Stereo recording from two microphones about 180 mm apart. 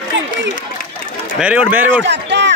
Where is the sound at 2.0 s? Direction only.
75° right (ahead or behind).